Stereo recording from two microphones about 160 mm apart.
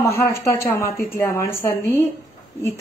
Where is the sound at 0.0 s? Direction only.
15° left (ahead or behind).